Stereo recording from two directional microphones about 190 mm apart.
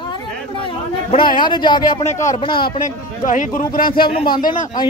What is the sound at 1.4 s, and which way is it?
Speech, 25° left (ahead or behind).